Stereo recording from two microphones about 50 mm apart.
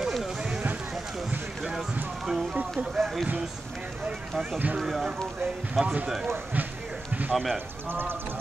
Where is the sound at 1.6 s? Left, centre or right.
Centre.